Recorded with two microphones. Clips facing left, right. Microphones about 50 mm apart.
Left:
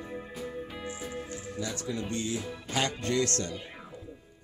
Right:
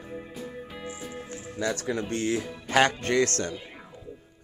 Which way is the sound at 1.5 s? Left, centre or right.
Right.